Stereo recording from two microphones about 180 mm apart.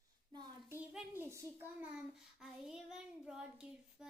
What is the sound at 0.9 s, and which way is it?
A child's voice, 15° right (ahead or behind).